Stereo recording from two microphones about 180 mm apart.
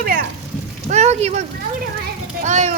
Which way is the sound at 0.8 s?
40° right (ahead or behind).